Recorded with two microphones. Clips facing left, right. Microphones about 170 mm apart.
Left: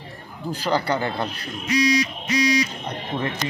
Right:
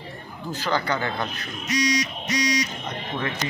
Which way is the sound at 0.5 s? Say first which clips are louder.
Left 3 dB; 35° left (ahead or behind).